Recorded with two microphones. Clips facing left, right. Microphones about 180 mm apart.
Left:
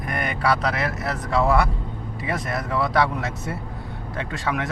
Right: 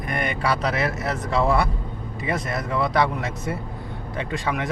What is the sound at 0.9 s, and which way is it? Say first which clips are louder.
Speech: right 1 dB; 20° right (ahead or behind).